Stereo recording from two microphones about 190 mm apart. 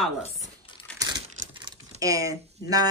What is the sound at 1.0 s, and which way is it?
Crumpling, 25° right (ahead or behind).